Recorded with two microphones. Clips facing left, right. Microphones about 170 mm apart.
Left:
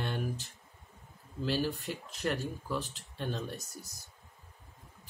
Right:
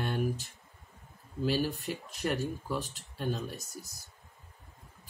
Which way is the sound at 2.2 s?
10° right (ahead or behind).